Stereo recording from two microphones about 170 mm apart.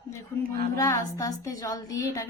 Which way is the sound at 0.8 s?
20° left (ahead or behind).